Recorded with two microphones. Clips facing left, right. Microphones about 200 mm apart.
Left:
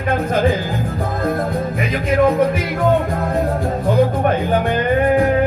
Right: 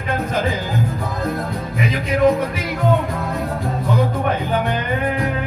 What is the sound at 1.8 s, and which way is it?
Music, 50° left (ahead or behind).